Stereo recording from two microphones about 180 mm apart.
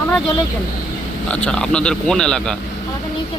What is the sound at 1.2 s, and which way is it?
Speech, 5° left (ahead or behind).